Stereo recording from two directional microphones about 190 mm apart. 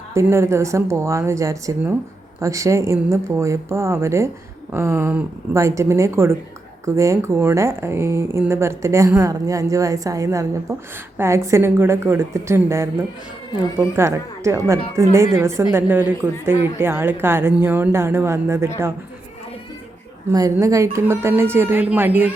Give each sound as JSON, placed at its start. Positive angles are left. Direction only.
{"t": 0.1, "sound": "speech", "side_deg": -15}
{"t": 20.3, "sound": "speech", "side_deg": -15}